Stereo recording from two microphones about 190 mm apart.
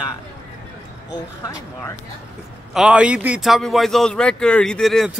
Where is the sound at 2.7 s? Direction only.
5° right (ahead or behind).